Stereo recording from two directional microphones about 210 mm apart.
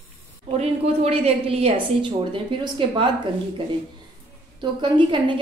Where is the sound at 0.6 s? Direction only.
30° right (ahead or behind).